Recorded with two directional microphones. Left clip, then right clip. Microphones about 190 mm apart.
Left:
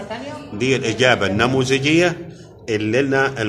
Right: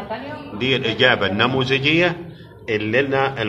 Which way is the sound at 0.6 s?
70° left (ahead or behind).